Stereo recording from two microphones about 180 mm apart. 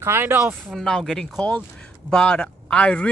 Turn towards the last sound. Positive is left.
turn(degrees=5)  # may be behind; listen again after turning